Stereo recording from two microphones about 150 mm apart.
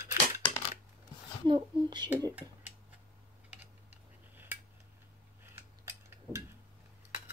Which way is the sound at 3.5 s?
10° right (ahead or behind).